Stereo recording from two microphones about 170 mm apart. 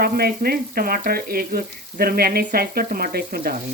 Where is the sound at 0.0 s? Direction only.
65° right (ahead or behind).